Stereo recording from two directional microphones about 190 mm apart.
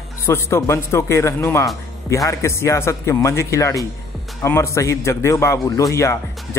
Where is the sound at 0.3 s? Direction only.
15° left (ahead or behind).